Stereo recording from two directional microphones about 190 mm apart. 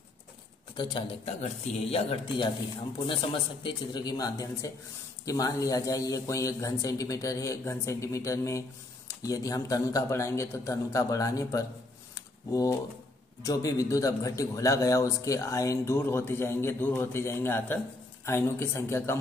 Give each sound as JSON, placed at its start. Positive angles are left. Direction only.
{"t": 0.7, "sound": "a man's voice", "side_deg": 30}
{"t": 13.4, "sound": "a man's voice", "side_deg": 20}